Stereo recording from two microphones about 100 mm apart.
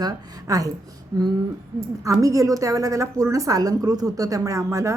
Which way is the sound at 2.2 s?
35° right (ahead or behind).